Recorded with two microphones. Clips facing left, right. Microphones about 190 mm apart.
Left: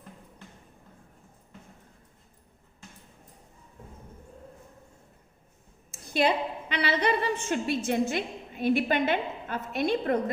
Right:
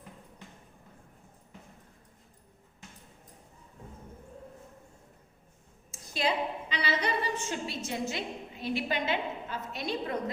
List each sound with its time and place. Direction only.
5.9 s a woman's voice: 60° left (ahead or behind)